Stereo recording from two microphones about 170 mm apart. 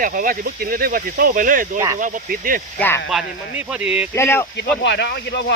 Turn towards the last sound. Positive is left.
turn(degrees=80)